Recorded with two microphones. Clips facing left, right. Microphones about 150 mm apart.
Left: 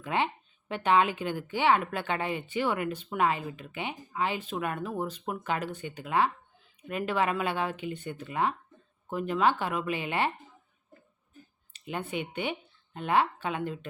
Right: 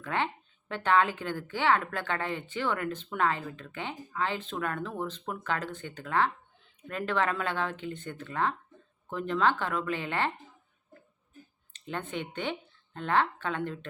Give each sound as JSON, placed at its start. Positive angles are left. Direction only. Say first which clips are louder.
{"t": 0.0, "sound": "a woman's voice", "louder": "left 2 dB", "side_deg": 15}
{"t": 11.7, "sound": "speech", "louder": "left 1 dB", "side_deg": 10}